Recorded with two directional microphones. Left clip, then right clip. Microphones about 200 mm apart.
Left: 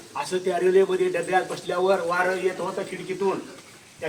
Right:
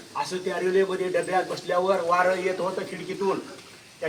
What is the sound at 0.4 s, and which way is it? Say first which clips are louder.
Speech: left 4 dB; 10° left (ahead or behind).